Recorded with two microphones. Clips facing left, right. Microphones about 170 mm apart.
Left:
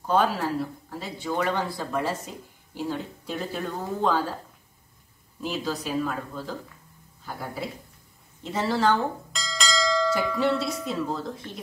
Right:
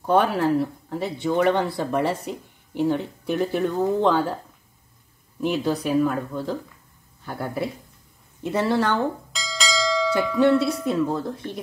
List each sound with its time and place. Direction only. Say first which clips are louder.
0.0 s speech: right 4 dB; 60° right (ahead or behind)
5.4 s speech: right 7 dB; 60° right (ahead or behind)
9.3 s church bell: right 2 dB; centre (ahead or behind)
10.9 s speech: right 6 dB; 55° right (ahead or behind)